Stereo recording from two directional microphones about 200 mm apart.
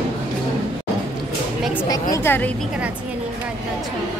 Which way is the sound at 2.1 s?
10° left (ahead or behind).